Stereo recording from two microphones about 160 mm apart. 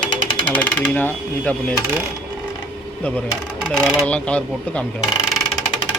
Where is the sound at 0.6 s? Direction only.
10° left (ahead or behind).